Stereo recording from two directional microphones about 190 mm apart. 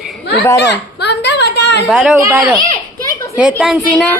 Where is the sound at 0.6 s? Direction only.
65° left (ahead or behind).